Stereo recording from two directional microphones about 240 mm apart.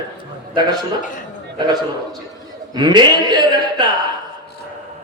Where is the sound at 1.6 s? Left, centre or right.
Centre.